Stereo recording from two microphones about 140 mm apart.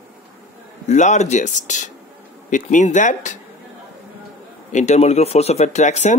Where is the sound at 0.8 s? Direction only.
55° left (ahead or behind).